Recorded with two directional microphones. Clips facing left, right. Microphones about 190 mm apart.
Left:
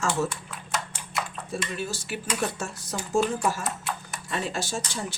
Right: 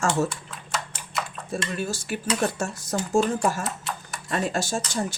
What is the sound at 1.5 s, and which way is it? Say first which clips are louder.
Speech: right 3 dB; 45° right (ahead or behind).